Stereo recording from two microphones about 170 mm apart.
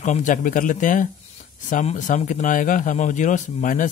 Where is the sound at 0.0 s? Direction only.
45° left (ahead or behind).